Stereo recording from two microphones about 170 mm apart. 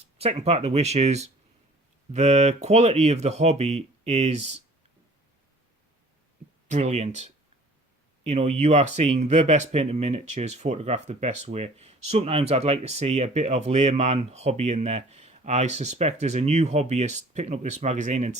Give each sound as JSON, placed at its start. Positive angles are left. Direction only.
{"t": 0.0, "sound": "speech", "side_deg": -35}
{"t": 6.7, "sound": "speech", "side_deg": -45}